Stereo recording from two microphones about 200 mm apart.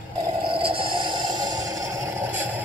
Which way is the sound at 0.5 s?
25° right (ahead or behind).